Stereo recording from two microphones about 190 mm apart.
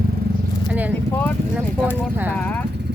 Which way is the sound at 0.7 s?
10° right (ahead or behind).